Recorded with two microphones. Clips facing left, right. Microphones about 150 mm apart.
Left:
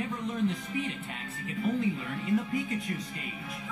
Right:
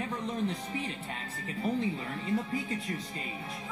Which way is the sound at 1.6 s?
35° right (ahead or behind).